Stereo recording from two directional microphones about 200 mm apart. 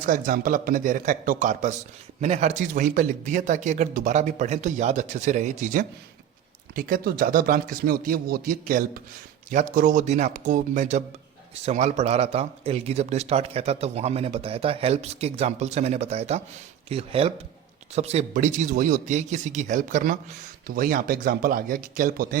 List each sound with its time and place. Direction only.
0.0 s a man's voice: 45° right (ahead or behind)